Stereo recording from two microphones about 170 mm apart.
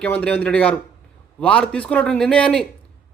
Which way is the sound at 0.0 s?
10° left (ahead or behind).